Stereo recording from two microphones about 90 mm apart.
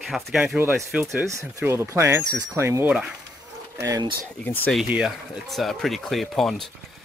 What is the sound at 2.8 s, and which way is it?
Speech, 10° right (ahead or behind).